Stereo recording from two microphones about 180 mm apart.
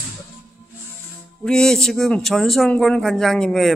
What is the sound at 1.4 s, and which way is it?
Speech, 5° left (ahead or behind).